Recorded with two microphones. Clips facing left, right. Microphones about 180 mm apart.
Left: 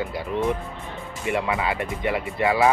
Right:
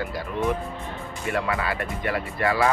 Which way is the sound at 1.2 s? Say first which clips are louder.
Left 2 dB; 20° left (ahead or behind).